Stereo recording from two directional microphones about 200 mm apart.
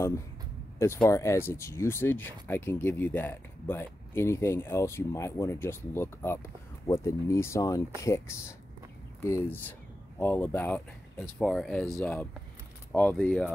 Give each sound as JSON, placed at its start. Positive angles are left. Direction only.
{"t": 0.7, "sound": "speech", "side_deg": 10}